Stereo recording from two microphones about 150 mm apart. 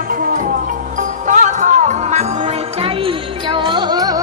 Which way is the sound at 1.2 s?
55° right (ahead or behind).